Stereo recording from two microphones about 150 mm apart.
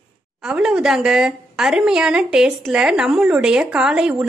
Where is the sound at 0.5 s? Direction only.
5° right (ahead or behind).